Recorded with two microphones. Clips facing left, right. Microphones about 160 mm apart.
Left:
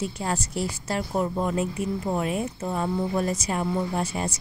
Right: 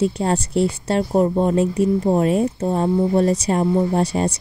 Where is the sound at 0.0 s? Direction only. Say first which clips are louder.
Right 9 dB; 30° right (ahead or behind).